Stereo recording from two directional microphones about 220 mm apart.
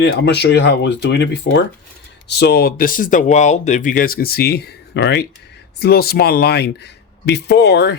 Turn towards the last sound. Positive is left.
turn(degrees=50)  # may be behind; listen again after turning